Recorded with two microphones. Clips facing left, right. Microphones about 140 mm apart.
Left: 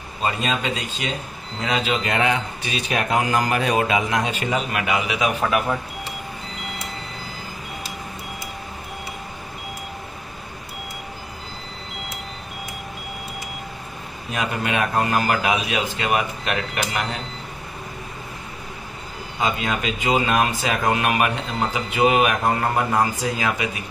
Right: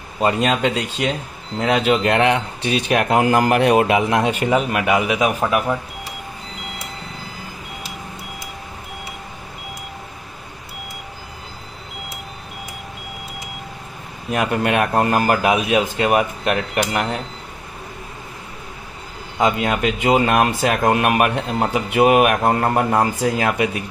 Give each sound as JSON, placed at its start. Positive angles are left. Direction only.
{"t": 0.2, "sound": "speech", "side_deg": -70}
{"t": 5.3, "sound": "a man's voice", "side_deg": -10}
{"t": 14.3, "sound": "a man's voice", "side_deg": -55}
{"t": 19.3, "sound": "speech", "side_deg": -60}
{"t": 23.2, "sound": "speech", "side_deg": -55}